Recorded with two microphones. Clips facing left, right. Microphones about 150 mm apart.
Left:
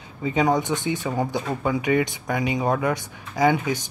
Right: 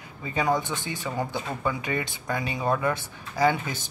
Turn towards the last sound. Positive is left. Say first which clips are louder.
# left 3 dB
turn(degrees=15)  # may be behind; listen again after turning